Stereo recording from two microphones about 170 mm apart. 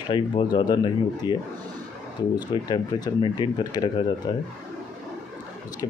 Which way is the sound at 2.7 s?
25° left (ahead or behind).